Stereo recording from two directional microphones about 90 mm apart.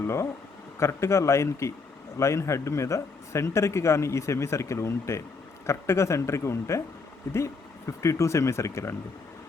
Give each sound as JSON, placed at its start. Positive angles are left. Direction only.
{"t": 0.0, "sound": "speech", "side_deg": 30}